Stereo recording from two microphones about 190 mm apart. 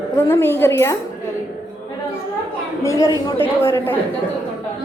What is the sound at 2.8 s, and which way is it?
A woman's voice, 15° left (ahead or behind).